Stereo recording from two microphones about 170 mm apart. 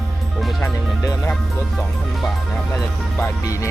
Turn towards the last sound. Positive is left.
turn(degrees=15)  # may be behind; listen again after turning